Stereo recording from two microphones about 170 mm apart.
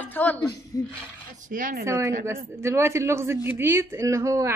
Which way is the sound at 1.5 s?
50° right (ahead or behind).